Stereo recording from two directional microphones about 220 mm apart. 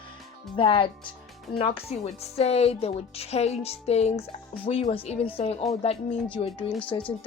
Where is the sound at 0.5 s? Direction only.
25° left (ahead or behind).